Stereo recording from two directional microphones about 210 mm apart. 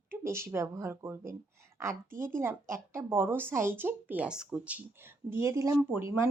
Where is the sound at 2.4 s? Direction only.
10° right (ahead or behind).